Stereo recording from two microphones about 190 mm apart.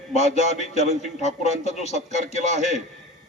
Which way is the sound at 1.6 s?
35° left (ahead or behind).